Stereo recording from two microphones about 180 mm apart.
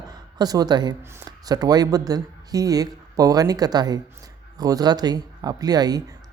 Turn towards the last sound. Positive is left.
turn(degrees=-20)  # may be behind; listen again after turning